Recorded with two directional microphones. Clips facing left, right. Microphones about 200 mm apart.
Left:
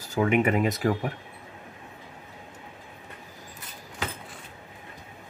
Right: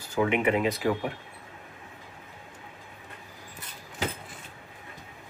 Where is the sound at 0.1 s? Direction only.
45° left (ahead or behind).